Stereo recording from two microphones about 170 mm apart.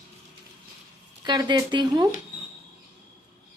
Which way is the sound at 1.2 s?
25° right (ahead or behind).